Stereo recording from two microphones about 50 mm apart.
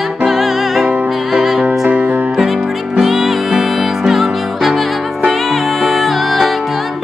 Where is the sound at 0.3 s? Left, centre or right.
Centre.